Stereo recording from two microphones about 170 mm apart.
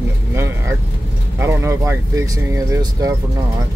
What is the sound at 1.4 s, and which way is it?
Speech, 15° right (ahead or behind).